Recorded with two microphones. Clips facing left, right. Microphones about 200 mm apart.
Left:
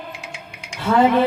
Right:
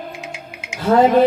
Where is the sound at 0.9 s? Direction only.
40° right (ahead or behind).